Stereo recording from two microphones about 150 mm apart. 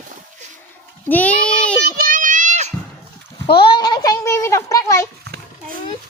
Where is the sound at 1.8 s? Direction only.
70° right (ahead or behind); by 2.7 s 50° right (ahead or behind).